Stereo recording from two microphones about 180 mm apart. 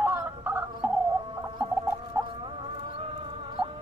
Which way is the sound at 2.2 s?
30° right (ahead or behind).